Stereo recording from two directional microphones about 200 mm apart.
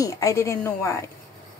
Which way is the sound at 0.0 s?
15° left (ahead or behind).